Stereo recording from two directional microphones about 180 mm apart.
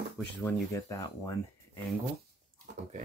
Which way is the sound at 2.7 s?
65° right (ahead or behind).